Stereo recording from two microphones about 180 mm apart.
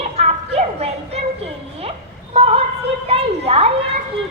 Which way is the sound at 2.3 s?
35° right (ahead or behind).